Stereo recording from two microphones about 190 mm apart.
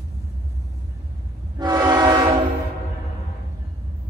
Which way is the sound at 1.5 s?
20° right (ahead or behind).